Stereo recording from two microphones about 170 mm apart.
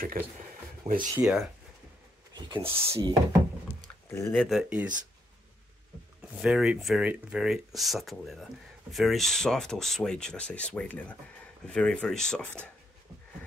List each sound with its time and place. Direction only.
0.2 s speech: 55° right (ahead or behind)
0.8 s speech: 35° right (ahead or behind)
1.2 s speech: centre (ahead or behind)
2.3 s speech: 25° right (ahead or behind)
2.8 s speech: 15° right (ahead or behind)
4.1 s speech: 15° left (ahead or behind)
4.4 s speech: centre (ahead or behind)
6.4 s speech: 5° right (ahead or behind)